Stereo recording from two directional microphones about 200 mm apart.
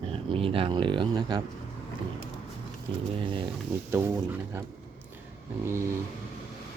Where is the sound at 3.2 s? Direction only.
25° right (ahead or behind).